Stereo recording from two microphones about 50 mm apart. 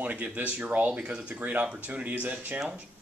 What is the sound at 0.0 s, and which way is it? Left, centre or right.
A man's voice, right.